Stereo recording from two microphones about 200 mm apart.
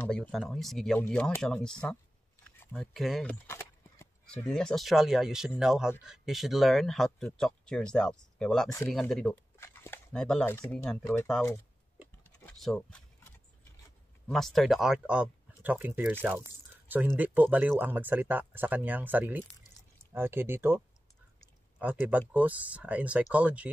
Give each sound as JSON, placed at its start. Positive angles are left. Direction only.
{"t": 0.0, "sound": "speech", "side_deg": 5}
{"t": 3.4, "sound": "speech", "side_deg": 10}
{"t": 12.2, "sound": "typing", "side_deg": 5}
{"t": 14.2, "sound": "speech", "side_deg": 0}
{"t": 21.7, "sound": "speech", "side_deg": -10}